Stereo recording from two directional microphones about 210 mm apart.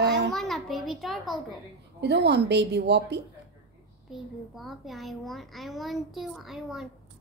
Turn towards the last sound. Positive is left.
turn(degrees=0)  # may be behind; listen again after turning